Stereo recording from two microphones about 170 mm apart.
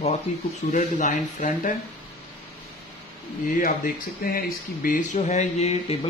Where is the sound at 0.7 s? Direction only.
50° left (ahead or behind).